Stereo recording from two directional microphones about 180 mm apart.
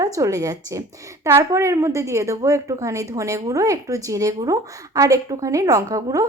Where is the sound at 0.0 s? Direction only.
20° right (ahead or behind).